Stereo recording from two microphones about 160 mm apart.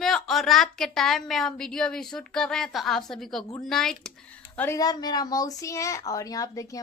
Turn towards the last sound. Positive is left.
turn(degrees=20)  # may be behind; listen again after turning